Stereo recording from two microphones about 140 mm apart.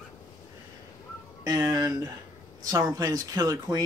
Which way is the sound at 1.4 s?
25° right (ahead or behind).